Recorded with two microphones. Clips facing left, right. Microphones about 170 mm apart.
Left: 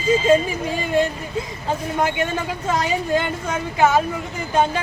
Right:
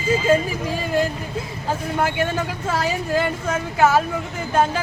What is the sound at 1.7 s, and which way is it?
A man's voice, 5° right (ahead or behind).